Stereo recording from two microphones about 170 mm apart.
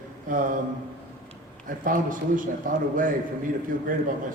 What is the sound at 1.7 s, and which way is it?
A man's voice, 55° right (ahead or behind).